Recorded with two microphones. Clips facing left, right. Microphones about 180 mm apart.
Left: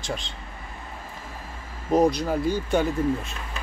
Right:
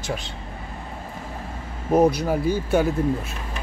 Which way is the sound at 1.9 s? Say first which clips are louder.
Right 2 dB; 5° right (ahead or behind).